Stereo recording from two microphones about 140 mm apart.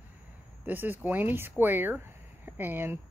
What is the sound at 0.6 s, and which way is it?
Speech, 15° right (ahead or behind).